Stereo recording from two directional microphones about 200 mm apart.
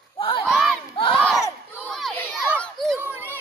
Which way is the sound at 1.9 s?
Centre (ahead or behind).